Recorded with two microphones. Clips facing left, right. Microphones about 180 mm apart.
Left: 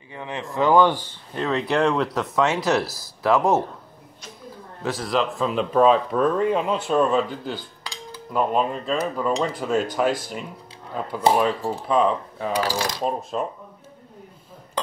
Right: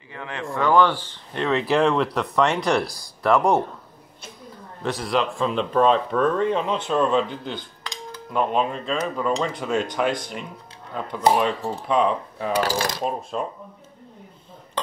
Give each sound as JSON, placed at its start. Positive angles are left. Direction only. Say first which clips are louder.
{"t": 0.1, "sound": "speech", "louder": "even", "side_deg": 20}
{"t": 1.3, "sound": "speech", "louder": "right 2 dB", "side_deg": 0}
{"t": 4.8, "sound": "speech", "louder": "even", "side_deg": 0}